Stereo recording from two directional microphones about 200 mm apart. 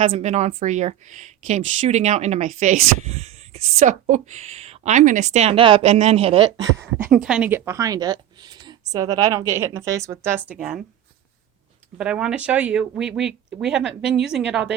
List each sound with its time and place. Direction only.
0.1 s speech: 35° right (ahead or behind)
7.0 s a woman's voice: 5° right (ahead or behind)
11.9 s speech: 5° right (ahead or behind)